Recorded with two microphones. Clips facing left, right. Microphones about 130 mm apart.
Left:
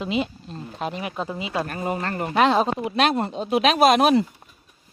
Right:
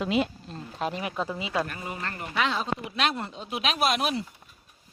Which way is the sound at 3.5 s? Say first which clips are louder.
Left 10 dB; 75° left (ahead or behind).